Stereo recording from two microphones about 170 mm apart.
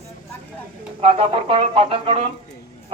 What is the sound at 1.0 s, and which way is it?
Speech, 35° right (ahead or behind).